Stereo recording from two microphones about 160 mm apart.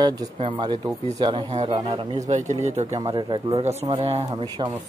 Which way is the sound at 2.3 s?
45° right (ahead or behind).